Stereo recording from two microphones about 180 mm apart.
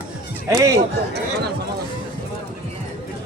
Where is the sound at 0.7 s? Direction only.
65° right (ahead or behind).